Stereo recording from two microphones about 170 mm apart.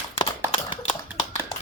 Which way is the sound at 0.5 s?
30° left (ahead or behind).